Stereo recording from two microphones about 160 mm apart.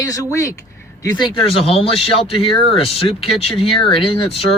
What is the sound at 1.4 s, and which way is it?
Speech, 35° left (ahead or behind).